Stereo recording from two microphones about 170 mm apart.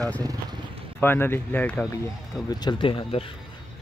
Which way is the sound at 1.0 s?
15° left (ahead or behind).